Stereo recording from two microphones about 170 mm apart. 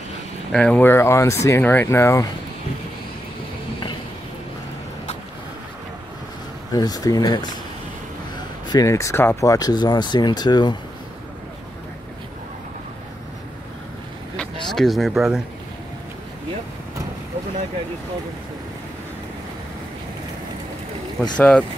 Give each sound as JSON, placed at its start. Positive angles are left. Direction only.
{"t": 0.5, "sound": "speech", "side_deg": 5}
{"t": 6.7, "sound": "speech", "side_deg": 20}
{"t": 8.6, "sound": "speech", "side_deg": 20}
{"t": 14.3, "sound": "a sound", "side_deg": 5}
{"t": 21.2, "sound": "speech", "side_deg": 5}